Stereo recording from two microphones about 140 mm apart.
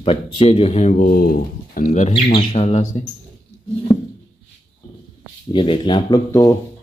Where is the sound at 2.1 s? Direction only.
40° left (ahead or behind).